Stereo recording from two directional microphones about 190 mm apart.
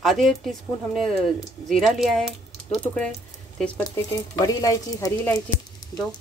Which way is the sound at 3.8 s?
20° left (ahead or behind).